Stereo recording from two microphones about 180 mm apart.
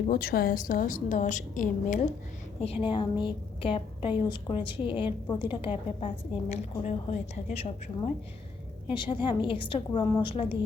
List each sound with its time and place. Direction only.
0.1 s a woman's voice: 55° left (ahead or behind)
2.8 s a woman's voice: 30° left (ahead or behind)